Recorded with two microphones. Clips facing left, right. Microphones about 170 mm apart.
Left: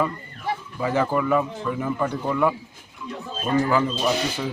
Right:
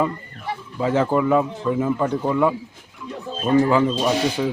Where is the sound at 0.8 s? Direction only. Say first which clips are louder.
Right 4 dB; 20° right (ahead or behind).